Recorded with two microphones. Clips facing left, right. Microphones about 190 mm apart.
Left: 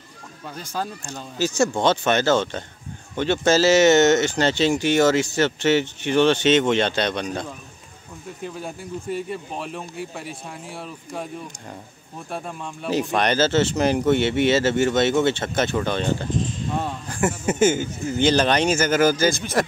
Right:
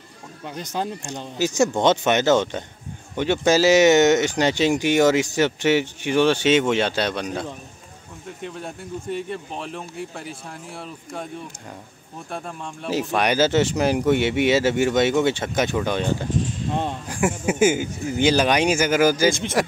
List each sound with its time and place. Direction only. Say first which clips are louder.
0.7 s speech: right 2 dB; 20° right (ahead or behind); by 11.2 s centre (ahead or behind)
12.3 s speech: left 1 dB; 5° left (ahead or behind); by 19.3 s 10° right (ahead or behind)